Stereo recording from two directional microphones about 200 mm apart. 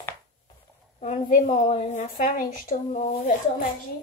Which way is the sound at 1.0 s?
40° left (ahead or behind).